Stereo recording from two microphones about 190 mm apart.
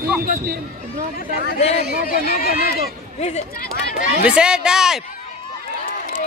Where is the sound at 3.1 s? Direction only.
35° left (ahead or behind).